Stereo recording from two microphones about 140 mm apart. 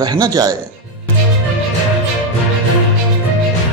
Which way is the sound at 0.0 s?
30° right (ahead or behind).